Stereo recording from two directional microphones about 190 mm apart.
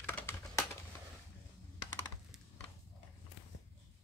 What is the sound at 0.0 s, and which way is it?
Typing, 10° left (ahead or behind).